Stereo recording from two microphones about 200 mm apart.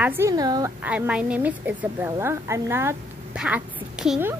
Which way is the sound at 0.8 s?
5° right (ahead or behind).